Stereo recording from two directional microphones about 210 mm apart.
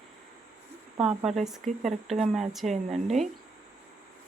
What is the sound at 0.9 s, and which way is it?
Speech, 25° right (ahead or behind).